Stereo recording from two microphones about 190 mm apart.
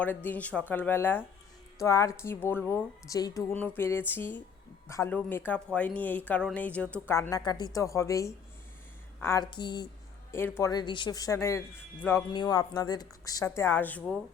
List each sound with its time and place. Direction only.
0.0 s speech: 10° left (ahead or behind)